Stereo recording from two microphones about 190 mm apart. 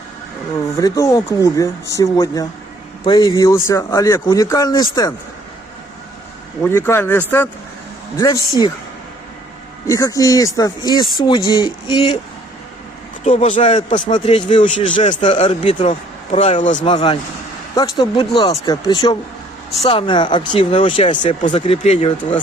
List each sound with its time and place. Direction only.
0.8 s speech: 15° left (ahead or behind)
6.6 s speech: 15° left (ahead or behind)
9.8 s speech: 15° left (ahead or behind)
13.2 s speech: 35° left (ahead or behind)
16.8 s speech: 30° left (ahead or behind)